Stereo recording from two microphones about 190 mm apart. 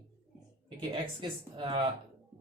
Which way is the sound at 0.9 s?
25° right (ahead or behind).